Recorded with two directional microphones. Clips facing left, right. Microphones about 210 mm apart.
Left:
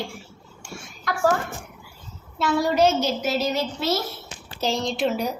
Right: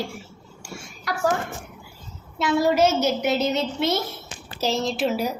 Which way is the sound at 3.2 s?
20° right (ahead or behind).